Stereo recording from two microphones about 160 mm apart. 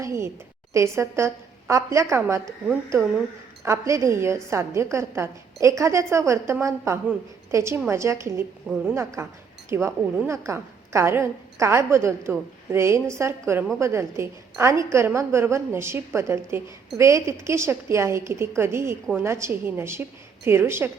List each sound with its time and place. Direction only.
0.0 s a sound: 20° right (ahead or behind)
0.7 s a woman's voice: 15° right (ahead or behind)
2.2 s a woman's voice: 10° right (ahead or behind)
3.6 s a woman's voice: 20° right (ahead or behind)
8.7 s speech: 5° right (ahead or behind)
9.2 s a woman's voice: 15° right (ahead or behind)